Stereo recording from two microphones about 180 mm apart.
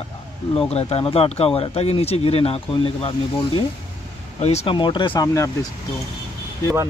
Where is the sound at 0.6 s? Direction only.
35° left (ahead or behind); by 5.5 s 20° left (ahead or behind).